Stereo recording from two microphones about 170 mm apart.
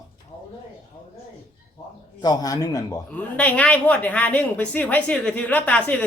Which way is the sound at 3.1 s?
10° left (ahead or behind).